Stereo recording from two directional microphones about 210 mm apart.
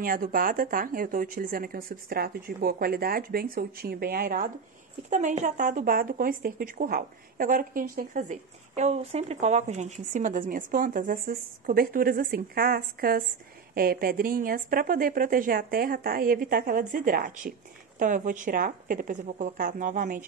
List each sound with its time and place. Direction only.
0.0 s speech: 40° right (ahead or behind)